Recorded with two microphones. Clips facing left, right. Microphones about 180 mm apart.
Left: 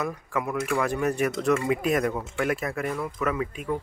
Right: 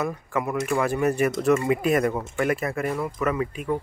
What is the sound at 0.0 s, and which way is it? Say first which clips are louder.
Speech: right 2 dB; centre (ahead or behind).